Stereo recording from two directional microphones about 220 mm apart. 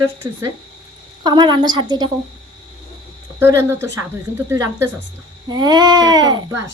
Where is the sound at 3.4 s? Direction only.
10° right (ahead or behind).